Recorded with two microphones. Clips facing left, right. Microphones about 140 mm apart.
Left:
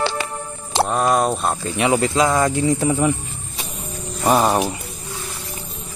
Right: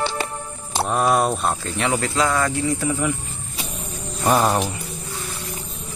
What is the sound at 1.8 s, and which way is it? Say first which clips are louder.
Speech: left 5 dB; 20° left (ahead or behind).